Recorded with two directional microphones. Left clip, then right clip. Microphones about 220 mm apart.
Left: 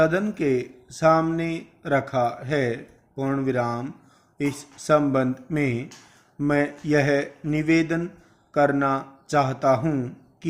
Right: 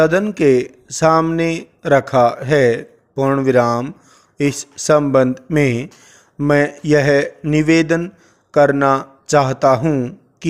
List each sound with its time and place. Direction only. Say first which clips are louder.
0.0 s speech: right 8 dB; 45° right (ahead or behind)